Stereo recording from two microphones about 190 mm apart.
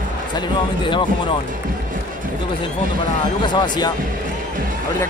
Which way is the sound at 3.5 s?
25° left (ahead or behind).